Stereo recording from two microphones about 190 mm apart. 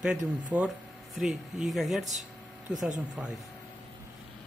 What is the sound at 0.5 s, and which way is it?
Speech, 5° right (ahead or behind).